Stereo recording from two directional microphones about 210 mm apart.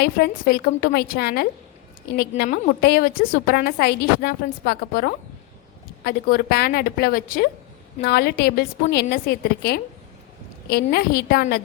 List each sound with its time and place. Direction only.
0.0 s a woman's voice: 50° left (ahead or behind)